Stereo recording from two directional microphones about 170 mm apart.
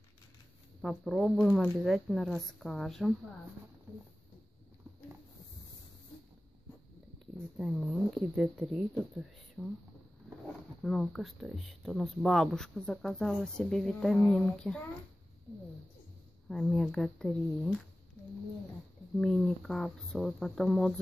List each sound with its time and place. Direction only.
0.8 s speech: centre (ahead or behind)
7.5 s speech: 5° right (ahead or behind)
10.8 s speech: centre (ahead or behind)
16.4 s speech: centre (ahead or behind)
19.1 s speech: 5° left (ahead or behind)